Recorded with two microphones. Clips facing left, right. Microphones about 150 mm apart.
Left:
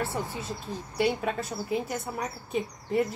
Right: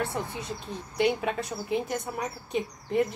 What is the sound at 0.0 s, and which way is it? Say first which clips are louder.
A woman's voice: even; 5° left (ahead or behind).